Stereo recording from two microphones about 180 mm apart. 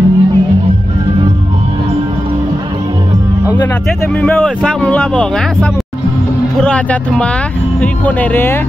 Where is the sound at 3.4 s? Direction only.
10° left (ahead or behind).